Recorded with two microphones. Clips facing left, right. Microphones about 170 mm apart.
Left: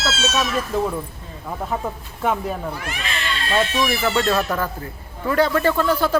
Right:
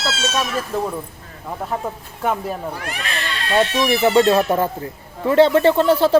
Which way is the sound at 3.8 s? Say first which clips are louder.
Right 6 dB; 20° right (ahead or behind).